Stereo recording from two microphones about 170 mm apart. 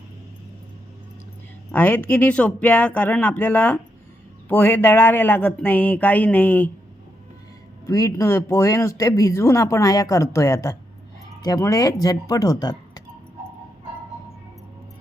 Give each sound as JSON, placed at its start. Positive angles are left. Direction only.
{"t": 1.7, "sound": "speech", "side_deg": 10}
{"t": 7.9, "sound": "speech", "side_deg": 20}